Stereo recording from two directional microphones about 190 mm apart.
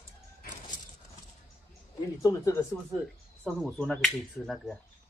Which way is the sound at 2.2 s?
15° left (ahead or behind).